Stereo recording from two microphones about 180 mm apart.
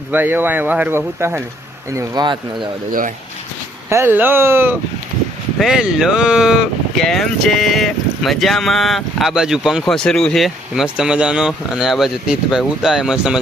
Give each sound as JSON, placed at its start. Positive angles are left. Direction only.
{"t": 0.1, "sound": "speech", "side_deg": -10}
{"t": 3.8, "sound": "speech", "side_deg": -15}